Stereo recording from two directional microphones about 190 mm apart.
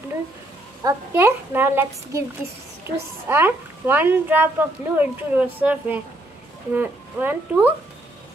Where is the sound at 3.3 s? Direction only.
10° right (ahead or behind).